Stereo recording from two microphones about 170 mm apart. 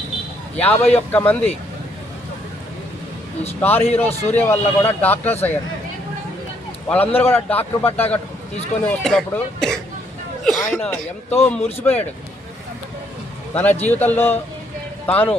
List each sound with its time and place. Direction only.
0.5 s speech: 10° left (ahead or behind)
3.6 s speech: 10° left (ahead or behind)
6.8 s a man's voice: 10° left (ahead or behind)
13.5 s a man's voice: 10° left (ahead or behind)